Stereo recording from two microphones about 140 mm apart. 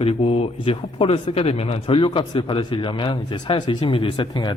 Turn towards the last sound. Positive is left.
turn(degrees=30)  # may be behind; listen again after turning